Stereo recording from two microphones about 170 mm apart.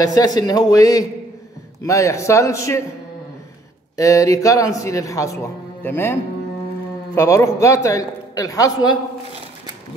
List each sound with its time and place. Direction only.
0.0 s a man's voice: 20° left (ahead or behind)
3.9 s a man's voice: 20° left (ahead or behind)
7.2 s a man's voice: 20° left (ahead or behind)